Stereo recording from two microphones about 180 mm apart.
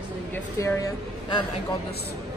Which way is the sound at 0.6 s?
15° left (ahead or behind).